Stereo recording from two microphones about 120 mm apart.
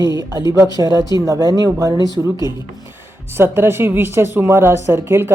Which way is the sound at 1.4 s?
30° right (ahead or behind).